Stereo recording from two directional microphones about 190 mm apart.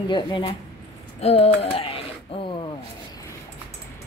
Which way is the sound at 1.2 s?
30° left (ahead or behind).